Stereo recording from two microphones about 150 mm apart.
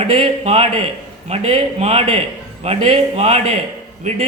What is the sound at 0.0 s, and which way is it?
A man's voice, 40° right (ahead or behind).